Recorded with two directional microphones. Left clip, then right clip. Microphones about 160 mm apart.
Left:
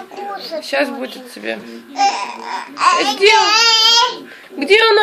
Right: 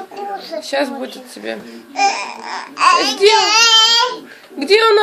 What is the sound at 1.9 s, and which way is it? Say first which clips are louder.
Speech: even; 15° right (ahead or behind).